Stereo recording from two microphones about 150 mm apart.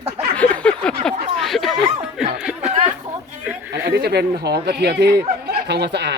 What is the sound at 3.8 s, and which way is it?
Speech, 90° right.